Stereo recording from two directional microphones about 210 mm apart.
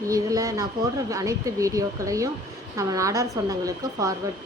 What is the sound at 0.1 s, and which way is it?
A woman's voice, 15° right (ahead or behind).